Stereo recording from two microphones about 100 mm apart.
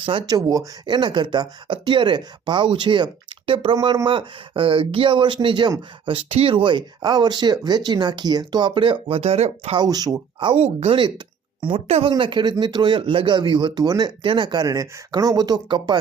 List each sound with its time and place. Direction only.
0.0 s speech: 60° right (ahead or behind)
0.3 s speech: 40° right (ahead or behind); by 3.8 s 60° right (ahead or behind)
3.8 s speech: 50° right (ahead or behind); by 9.7 s 90° right
9.7 s speech: 40° right (ahead or behind)
10.5 s a woman's voice: 90° right
12.1 s speech: 50° right (ahead or behind)